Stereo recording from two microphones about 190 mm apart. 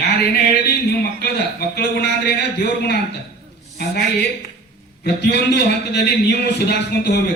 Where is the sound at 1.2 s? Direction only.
60° left (ahead or behind).